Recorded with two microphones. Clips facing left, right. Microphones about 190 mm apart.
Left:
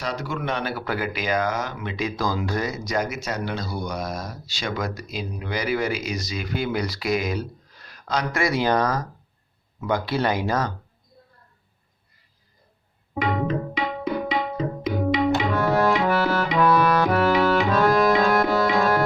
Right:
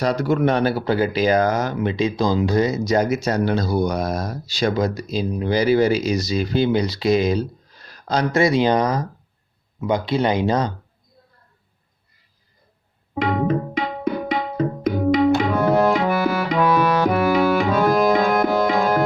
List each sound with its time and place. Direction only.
0.0 s speech: 40° right (ahead or behind); by 10.7 s 20° right (ahead or behind)
13.3 s tabla: 50° right (ahead or behind)
16.0 s tabla: 15° right (ahead or behind)
16.6 s music: 20° right (ahead or behind); by 18.2 s centre (ahead or behind)
18.4 s tabla: 15° right (ahead or behind)